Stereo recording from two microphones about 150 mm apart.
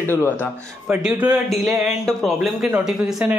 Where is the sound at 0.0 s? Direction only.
15° left (ahead or behind).